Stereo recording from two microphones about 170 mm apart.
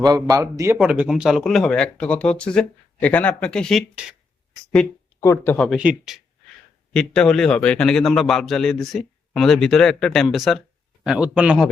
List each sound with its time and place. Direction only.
0.0 s a man's voice: 20° right (ahead or behind)
0.8 s a man's voice: 5° right (ahead or behind)
5.2 s a man's voice: 15° left (ahead or behind); by 11.7 s 5° right (ahead or behind)